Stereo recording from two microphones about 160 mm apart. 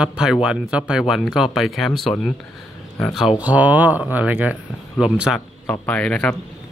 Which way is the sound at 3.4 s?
10° right (ahead or behind).